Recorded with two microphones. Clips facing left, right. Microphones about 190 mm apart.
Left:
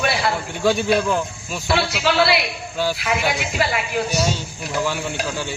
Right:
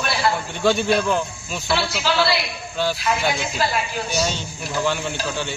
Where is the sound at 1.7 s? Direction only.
70° left (ahead or behind).